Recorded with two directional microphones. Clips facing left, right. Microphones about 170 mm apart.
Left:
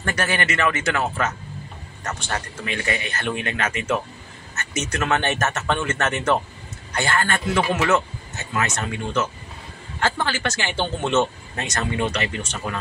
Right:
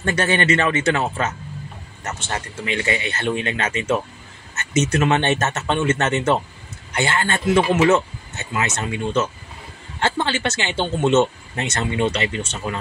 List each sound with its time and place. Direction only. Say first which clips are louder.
0.0 s speech: right 4 dB; 25° right (ahead or behind)